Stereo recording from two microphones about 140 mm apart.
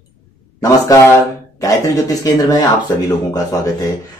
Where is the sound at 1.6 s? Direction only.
25° left (ahead or behind).